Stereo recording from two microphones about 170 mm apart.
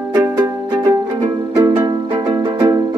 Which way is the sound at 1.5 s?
20° right (ahead or behind).